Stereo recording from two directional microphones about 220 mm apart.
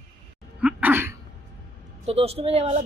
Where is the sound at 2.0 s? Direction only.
25° right (ahead or behind).